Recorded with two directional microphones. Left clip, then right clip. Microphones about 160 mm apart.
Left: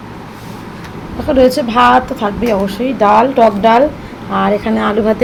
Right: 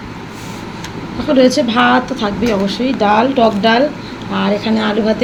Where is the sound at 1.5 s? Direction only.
10° left (ahead or behind).